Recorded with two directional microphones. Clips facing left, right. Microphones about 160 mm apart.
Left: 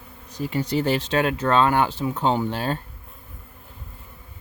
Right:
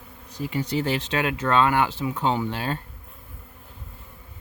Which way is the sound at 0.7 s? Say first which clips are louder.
Left 4 dB; 40° left (ahead or behind).